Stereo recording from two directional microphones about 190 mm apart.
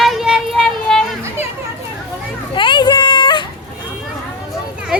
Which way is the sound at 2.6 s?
25° left (ahead or behind).